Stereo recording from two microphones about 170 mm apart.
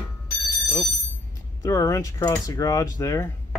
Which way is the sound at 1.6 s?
20° left (ahead or behind).